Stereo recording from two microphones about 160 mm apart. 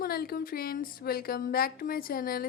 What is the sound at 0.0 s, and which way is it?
A woman's voice, 70° left (ahead or behind).